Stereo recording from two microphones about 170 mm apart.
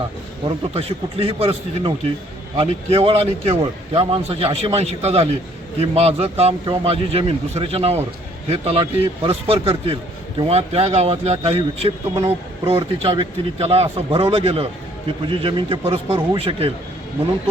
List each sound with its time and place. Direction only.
0.4 s a man's voice: 35° right (ahead or behind)